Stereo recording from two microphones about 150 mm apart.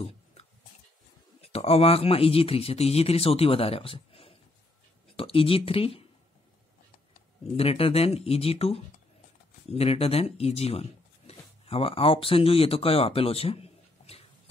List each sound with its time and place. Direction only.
0.0 s a sound: 45° left (ahead or behind)
1.4 s speech: 40° left (ahead or behind)
7.5 s speech: 40° left (ahead or behind)